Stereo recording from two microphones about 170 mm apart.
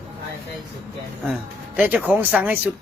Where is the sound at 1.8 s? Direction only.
10° right (ahead or behind).